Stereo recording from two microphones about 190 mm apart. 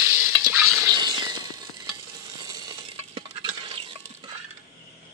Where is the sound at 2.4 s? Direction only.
20° right (ahead or behind).